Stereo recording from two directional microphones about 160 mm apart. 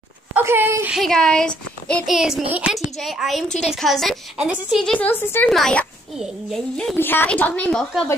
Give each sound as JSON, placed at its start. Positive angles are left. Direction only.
{"t": 0.3, "sound": "a sound", "side_deg": -15}
{"t": 0.9, "sound": "a child's voice", "side_deg": 5}
{"t": 2.5, "sound": "a child's voice", "side_deg": -10}
{"t": 7.0, "sound": "speech", "side_deg": 15}